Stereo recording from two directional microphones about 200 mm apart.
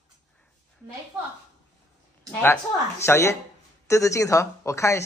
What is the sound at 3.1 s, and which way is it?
A man's voice, 15° left (ahead or behind).